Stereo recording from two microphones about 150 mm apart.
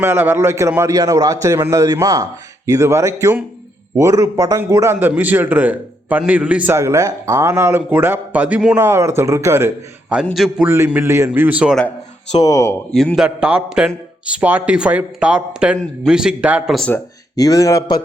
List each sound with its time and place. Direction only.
0.0 s a man's voice: 15° right (ahead or behind)
10.7 s a man's voice: 15° right (ahead or behind)
12.4 s speech: 20° left (ahead or behind)
12.9 s a man's voice: 5° left (ahead or behind)
17.3 s speech: 25° left (ahead or behind)